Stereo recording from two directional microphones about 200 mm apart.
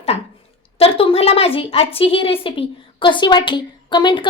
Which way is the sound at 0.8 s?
30° left (ahead or behind).